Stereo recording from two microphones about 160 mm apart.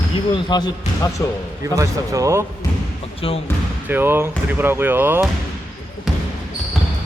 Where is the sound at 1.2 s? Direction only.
15° left (ahead or behind).